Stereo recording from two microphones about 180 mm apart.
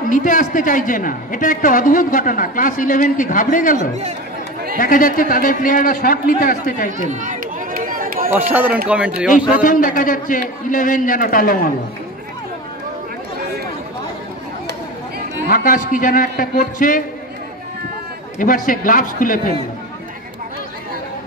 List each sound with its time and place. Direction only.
0.1 s a woman's voice: 45° left (ahead or behind)
7.0 s run: 45° right (ahead or behind)
8.3 s speech: 10° right (ahead or behind)
9.6 s a woman's voice: 50° left (ahead or behind)
15.4 s a woman's voice: 50° left (ahead or behind)
18.4 s a woman's voice: 50° left (ahead or behind)